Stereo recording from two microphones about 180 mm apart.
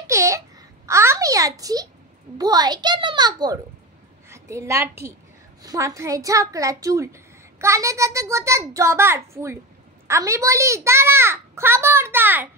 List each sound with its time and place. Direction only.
0.0 s babbling: 15° right (ahead or behind)
2.3 s a child's voice: 20° right (ahead or behind)